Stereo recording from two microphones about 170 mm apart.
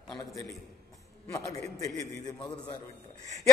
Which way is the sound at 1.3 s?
20° left (ahead or behind).